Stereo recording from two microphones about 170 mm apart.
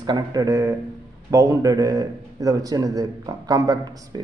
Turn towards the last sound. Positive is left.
turn(degrees=-20)  # may be behind; listen again after turning